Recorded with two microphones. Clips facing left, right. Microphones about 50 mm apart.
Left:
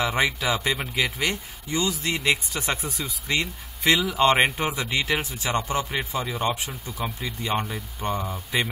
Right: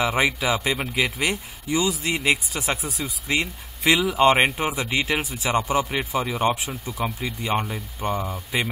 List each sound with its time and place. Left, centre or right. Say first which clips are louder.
0.0 s speech: right 2 dB; centre
6.1 s speech: right 5 dB; right
6.5 s speech: right 3 dB; centre
6.9 s speech: right 4 dB; centre